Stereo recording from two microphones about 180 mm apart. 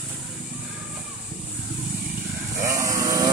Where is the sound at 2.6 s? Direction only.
15° right (ahead or behind).